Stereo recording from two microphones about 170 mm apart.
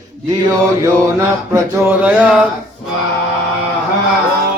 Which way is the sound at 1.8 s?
10° right (ahead or behind).